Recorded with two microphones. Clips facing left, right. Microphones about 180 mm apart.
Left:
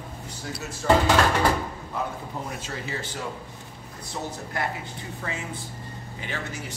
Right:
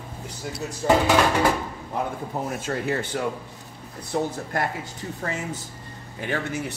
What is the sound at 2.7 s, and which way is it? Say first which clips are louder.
Speech: right 8 dB; 55° right (ahead or behind).